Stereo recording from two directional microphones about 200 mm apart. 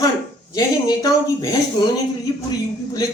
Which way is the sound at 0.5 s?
20° left (ahead or behind).